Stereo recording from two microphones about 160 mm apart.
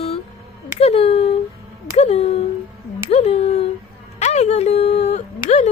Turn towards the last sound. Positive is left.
turn(degrees=45)  # may be behind; listen again after turning